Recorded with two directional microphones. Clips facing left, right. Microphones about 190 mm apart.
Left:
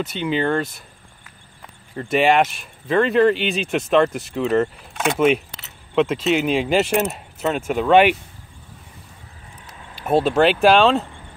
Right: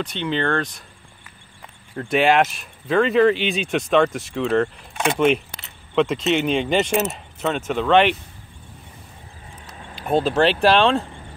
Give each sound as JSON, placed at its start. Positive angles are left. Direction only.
{"t": 0.0, "sound": "speech", "side_deg": 5}
{"t": 2.0, "sound": "speech", "side_deg": 0}
{"t": 10.0, "sound": "speech", "side_deg": 5}